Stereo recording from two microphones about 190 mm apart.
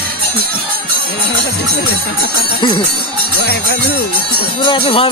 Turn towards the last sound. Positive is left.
turn(degrees=30)  # may be behind; listen again after turning